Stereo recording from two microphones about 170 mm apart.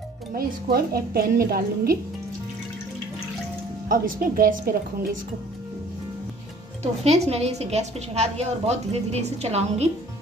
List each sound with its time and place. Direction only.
0.3 s a woman's voice: 60° right (ahead or behind)
3.9 s a woman's voice: 55° right (ahead or behind)
6.8 s a woman's voice: 40° right (ahead or behind)